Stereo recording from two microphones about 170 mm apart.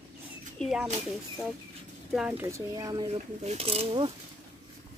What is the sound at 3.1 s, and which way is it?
Speech, 40° right (ahead or behind).